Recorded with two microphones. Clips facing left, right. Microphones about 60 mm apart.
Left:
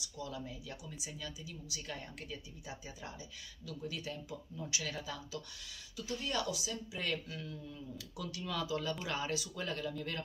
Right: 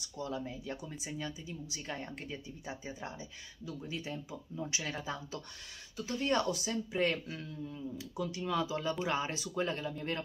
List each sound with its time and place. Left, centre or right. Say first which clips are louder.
0.0 s speech: right 5 dB; right